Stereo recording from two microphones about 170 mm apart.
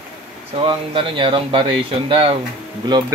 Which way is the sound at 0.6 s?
30° right (ahead or behind).